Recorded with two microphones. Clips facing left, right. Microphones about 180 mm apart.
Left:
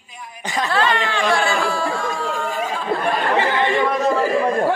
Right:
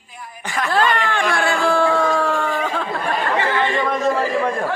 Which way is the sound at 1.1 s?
60° right (ahead or behind).